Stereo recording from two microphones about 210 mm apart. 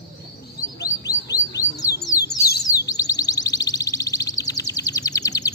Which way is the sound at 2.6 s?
15° left (ahead or behind).